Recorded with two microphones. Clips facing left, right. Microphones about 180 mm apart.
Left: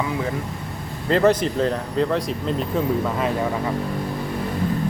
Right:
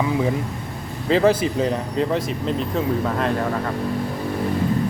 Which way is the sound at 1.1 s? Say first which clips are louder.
Even; 10° right (ahead or behind).